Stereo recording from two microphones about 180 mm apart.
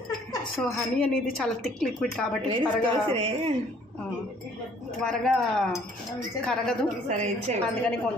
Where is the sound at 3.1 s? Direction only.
30° right (ahead or behind).